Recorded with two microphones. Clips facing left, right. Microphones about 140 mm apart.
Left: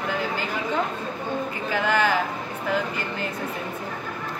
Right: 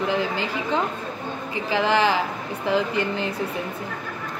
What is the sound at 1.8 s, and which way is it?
Speech, 30° right (ahead or behind).